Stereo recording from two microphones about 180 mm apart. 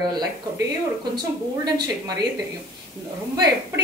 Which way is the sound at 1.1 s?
20° right (ahead or behind).